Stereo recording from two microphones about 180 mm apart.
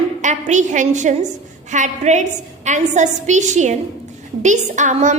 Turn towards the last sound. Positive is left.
turn(degrees=-40)  # may be behind; listen again after turning